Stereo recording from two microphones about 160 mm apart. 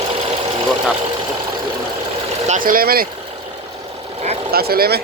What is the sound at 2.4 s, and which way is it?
Speech, 55° right (ahead or behind).